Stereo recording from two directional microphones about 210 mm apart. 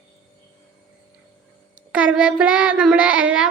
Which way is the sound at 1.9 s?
5° right (ahead or behind).